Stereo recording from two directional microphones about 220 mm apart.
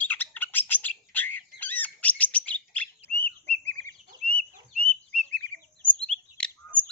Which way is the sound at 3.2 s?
30° right (ahead or behind).